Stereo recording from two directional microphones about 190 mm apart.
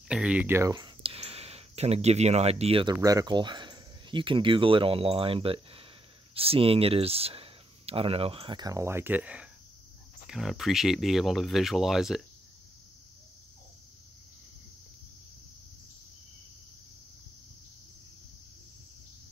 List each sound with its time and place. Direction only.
0.1 s speech: 5° right (ahead or behind)